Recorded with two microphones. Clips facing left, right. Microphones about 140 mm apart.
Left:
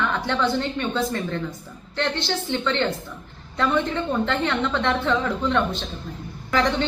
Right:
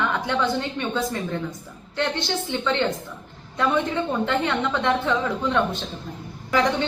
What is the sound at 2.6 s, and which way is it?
Speech, 15° right (ahead or behind).